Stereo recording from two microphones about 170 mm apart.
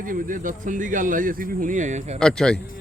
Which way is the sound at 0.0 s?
55° right (ahead or behind).